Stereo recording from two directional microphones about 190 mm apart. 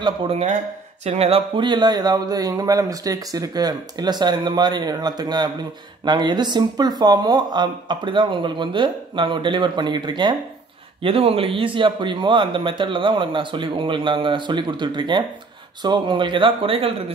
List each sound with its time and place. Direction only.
0.0 s a man's voice: 35° right (ahead or behind)